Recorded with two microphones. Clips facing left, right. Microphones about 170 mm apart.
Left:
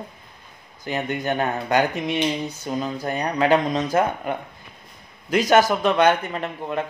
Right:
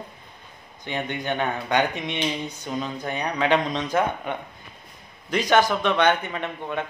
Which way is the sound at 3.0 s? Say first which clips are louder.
Left 4 dB; 40° left (ahead or behind).